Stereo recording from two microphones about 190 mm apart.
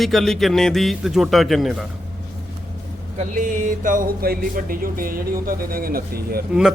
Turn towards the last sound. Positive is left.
turn(degrees=0)  # may be behind; listen again after turning